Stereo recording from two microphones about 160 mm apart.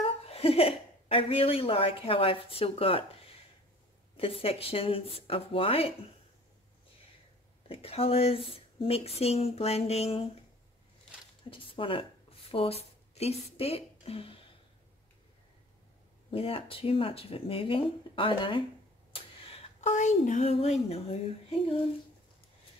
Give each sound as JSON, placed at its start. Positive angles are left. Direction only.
{"t": 0.3, "sound": "a woman's voice", "side_deg": 35}
{"t": 7.6, "sound": "speech", "side_deg": 35}
{"t": 11.5, "sound": "a woman's voice", "side_deg": 35}
{"t": 16.3, "sound": "speech", "side_deg": 35}